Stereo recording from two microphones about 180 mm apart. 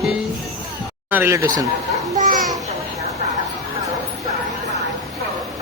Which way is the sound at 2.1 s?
50° right (ahead or behind).